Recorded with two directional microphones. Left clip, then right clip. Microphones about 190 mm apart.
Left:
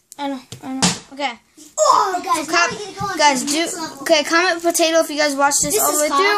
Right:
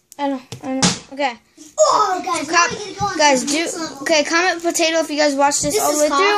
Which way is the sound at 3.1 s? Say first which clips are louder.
Even; 35° left (ahead or behind).